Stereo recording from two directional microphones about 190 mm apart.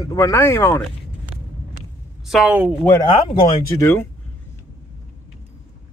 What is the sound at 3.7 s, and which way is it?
Speech, 10° left (ahead or behind).